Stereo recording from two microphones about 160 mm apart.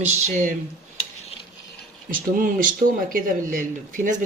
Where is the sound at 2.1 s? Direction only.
60° right (ahead or behind).